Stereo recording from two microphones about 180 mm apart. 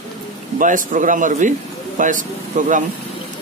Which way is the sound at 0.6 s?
45° right (ahead or behind).